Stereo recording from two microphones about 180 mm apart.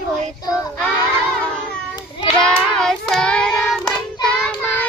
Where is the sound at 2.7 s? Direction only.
5° left (ahead or behind).